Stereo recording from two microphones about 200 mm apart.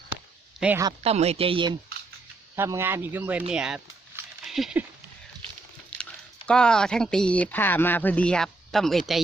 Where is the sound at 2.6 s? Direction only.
10° right (ahead or behind).